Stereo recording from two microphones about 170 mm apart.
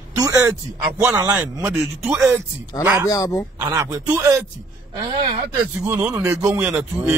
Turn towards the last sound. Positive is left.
turn(degrees=-10)  # may be behind; listen again after turning